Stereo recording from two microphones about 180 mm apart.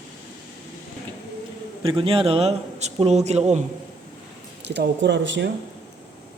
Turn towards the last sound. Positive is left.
turn(degrees=-85)